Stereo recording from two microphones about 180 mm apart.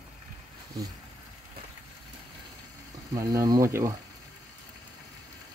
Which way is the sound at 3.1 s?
20° right (ahead or behind).